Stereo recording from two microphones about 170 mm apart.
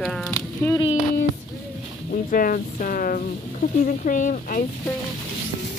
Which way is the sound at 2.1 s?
55° left (ahead or behind).